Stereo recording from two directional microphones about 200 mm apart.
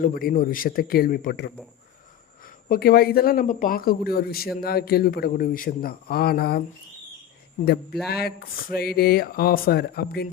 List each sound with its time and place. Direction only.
0.0 s speech: 45° left (ahead or behind)
7.6 s speech: 50° left (ahead or behind)